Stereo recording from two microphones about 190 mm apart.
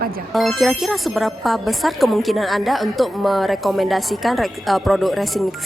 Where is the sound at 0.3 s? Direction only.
Centre (ahead or behind).